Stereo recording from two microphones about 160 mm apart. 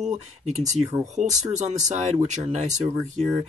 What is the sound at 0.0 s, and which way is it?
Speech, 45° right (ahead or behind).